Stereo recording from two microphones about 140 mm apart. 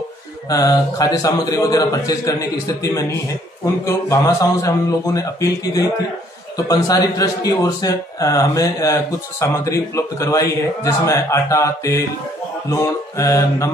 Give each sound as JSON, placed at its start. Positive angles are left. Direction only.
{"t": 0.5, "sound": "a man's voice", "side_deg": 25}